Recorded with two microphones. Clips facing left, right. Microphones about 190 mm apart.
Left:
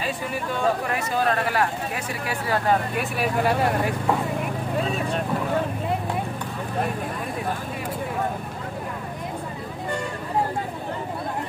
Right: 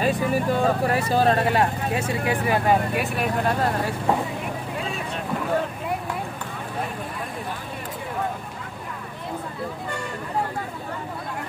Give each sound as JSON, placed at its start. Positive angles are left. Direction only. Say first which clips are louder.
{"t": 0.0, "sound": "speech", "louder": "right 6 dB", "side_deg": -40}
{"t": 3.0, "sound": "speech", "louder": "left 1 dB", "side_deg": 5}